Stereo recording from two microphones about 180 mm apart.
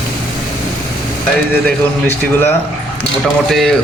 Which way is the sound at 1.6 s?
10° left (ahead or behind).